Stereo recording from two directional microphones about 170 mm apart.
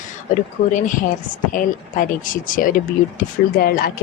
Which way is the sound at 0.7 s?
50° left (ahead or behind).